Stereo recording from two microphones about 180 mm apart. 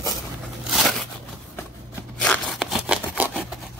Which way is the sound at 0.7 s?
Centre (ahead or behind).